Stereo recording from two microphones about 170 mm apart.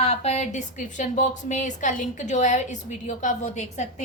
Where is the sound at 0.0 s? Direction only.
40° left (ahead or behind).